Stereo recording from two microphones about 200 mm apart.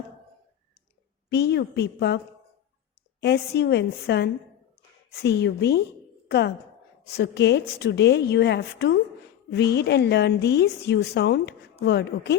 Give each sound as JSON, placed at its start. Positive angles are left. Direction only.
{"t": 1.3, "sound": "a woman's voice", "side_deg": 55}